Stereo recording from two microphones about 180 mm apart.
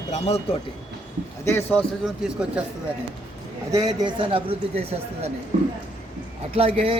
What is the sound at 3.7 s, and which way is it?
Speech, 20° right (ahead or behind).